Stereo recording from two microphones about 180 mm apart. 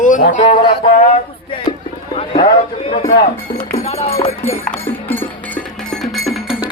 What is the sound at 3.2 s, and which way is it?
Speech, 55° left (ahead or behind).